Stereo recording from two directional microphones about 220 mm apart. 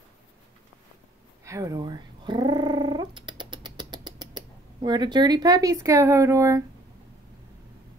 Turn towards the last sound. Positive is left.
turn(degrees=-15)  # may be behind; listen again after turning